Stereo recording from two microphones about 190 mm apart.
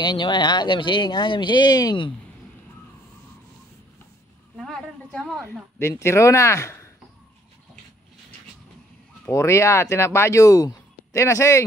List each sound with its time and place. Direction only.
0.0 s speech: 25° left (ahead or behind)
4.6 s a sound: centre (ahead or behind)
5.8 s speech: 15° left (ahead or behind)
9.2 s speech: 15° left (ahead or behind)